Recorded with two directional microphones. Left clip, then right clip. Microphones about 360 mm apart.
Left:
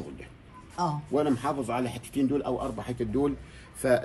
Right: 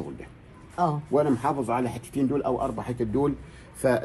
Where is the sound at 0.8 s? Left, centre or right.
Centre.